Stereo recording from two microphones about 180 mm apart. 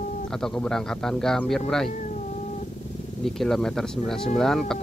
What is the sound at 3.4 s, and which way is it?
Speech, centre (ahead or behind).